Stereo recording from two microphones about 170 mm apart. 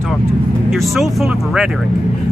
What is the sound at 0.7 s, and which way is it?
Speech, centre (ahead or behind).